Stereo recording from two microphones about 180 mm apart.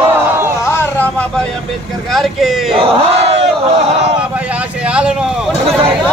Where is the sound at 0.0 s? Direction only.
10° right (ahead or behind).